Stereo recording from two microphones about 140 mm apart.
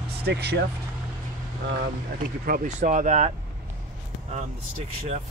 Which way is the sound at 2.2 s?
75° right (ahead or behind).